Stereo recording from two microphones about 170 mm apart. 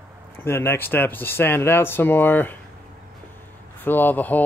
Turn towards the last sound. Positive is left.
turn(degrees=10)  # may be behind; listen again after turning